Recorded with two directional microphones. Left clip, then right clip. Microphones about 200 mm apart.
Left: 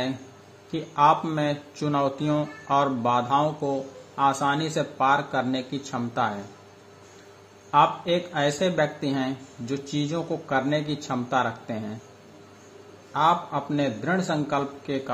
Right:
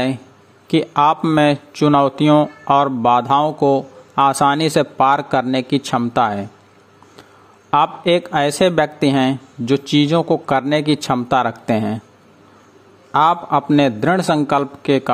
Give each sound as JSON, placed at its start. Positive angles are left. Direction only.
{"t": 0.7, "sound": "speech", "side_deg": -50}
{"t": 7.7, "sound": "speech", "side_deg": -50}
{"t": 13.1, "sound": "speech", "side_deg": -55}